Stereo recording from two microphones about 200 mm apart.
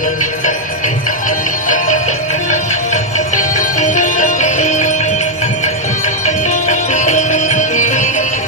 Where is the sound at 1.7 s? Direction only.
40° left (ahead or behind).